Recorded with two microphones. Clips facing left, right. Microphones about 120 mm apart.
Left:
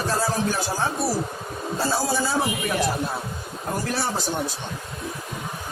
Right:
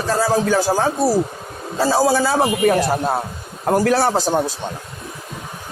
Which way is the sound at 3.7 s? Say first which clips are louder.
Right 11 dB; 70° right (ahead or behind).